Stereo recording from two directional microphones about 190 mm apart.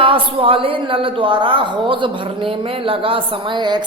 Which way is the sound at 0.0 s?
25° right (ahead or behind).